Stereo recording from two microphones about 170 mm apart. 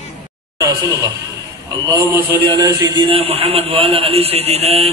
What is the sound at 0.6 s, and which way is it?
A man's voice, 20° right (ahead or behind).